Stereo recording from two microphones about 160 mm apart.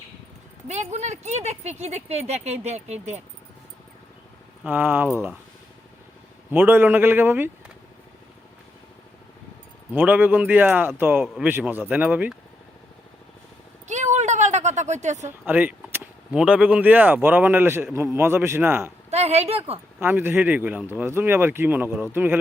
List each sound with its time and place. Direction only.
0.7 s speech: 45° right (ahead or behind)
4.6 s speech: 10° right (ahead or behind)
6.5 s speech: 10° right (ahead or behind)
9.9 s speech: 10° right (ahead or behind)
13.8 s a sound: 50° right (ahead or behind)
15.2 s speech: 15° right (ahead or behind)
19.1 s a woman's voice: 40° right (ahead or behind)
20.0 s speech: 15° right (ahead or behind)